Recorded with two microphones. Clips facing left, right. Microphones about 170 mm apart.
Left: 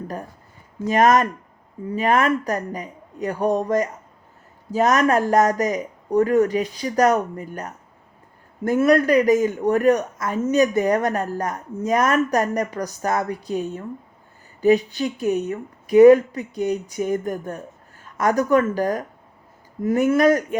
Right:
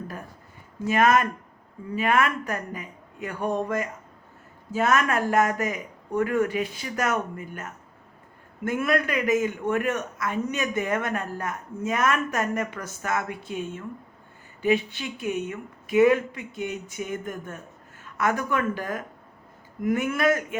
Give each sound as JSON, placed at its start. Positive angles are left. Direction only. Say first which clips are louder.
{"t": 0.9, "sound": "a man's voice", "louder": "left 4 dB", "side_deg": 40}